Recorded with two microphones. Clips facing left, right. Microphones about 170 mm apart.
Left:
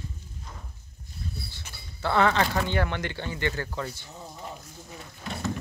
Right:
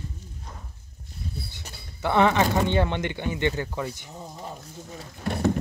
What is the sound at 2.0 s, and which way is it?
Speech, 20° right (ahead or behind).